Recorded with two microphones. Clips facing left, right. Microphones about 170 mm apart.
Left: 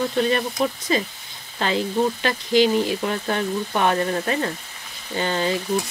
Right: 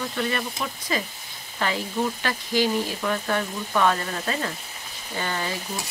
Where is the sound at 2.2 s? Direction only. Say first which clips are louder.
Left 7 dB; 20° left (ahead or behind).